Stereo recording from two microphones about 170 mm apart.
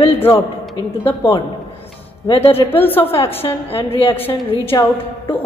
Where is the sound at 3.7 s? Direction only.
35° left (ahead or behind).